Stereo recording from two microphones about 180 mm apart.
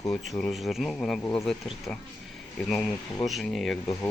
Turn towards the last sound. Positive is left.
turn(degrees=5)  # may be behind; listen again after turning